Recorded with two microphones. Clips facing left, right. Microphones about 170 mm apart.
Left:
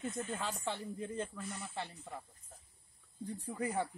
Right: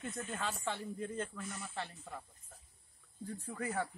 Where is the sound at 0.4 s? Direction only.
10° left (ahead or behind).